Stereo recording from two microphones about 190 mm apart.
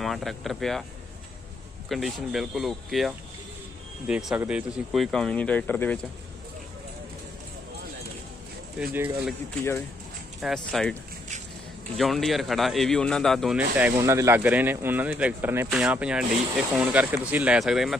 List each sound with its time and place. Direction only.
0.0 s speech: centre (ahead or behind)
1.9 s speech: centre (ahead or behind)
8.9 s speech: 10° right (ahead or behind)
10.4 s speech: centre (ahead or behind)
12.0 s speech: centre (ahead or behind)